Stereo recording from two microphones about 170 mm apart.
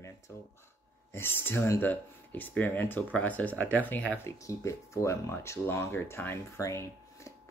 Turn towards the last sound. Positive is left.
turn(degrees=15)  # may be behind; listen again after turning